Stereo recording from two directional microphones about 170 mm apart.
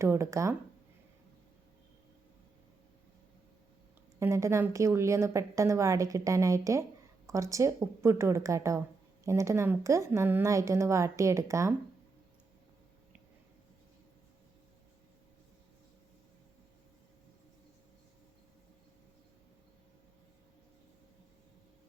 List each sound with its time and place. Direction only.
0.0 s a woman's voice: 15° right (ahead or behind)
4.2 s a woman's voice: 15° right (ahead or behind)